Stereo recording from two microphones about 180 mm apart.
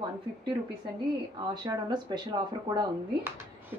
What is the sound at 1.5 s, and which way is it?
A woman's voice, 25° right (ahead or behind).